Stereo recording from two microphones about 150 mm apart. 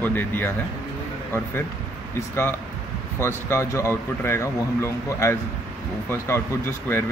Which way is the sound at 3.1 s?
15° left (ahead or behind).